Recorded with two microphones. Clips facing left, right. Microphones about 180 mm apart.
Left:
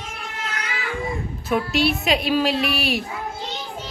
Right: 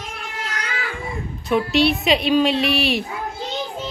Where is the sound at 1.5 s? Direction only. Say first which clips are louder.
Right 3 dB; centre (ahead or behind).